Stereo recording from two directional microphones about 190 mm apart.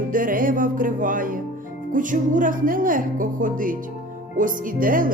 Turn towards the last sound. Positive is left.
turn(degrees=-45)  # may be behind; listen again after turning